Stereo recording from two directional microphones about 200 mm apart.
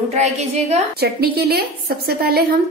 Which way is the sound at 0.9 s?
50° right (ahead or behind).